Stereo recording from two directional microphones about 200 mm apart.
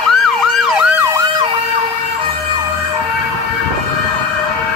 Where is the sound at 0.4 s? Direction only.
5° right (ahead or behind).